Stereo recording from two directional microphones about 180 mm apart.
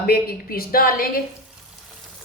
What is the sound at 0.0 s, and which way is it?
A woman's voice, 60° left (ahead or behind).